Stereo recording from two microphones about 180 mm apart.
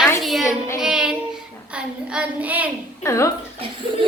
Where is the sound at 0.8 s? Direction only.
5° right (ahead or behind).